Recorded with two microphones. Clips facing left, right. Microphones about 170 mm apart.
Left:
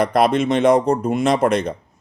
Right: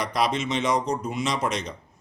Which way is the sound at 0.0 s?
55° left (ahead or behind).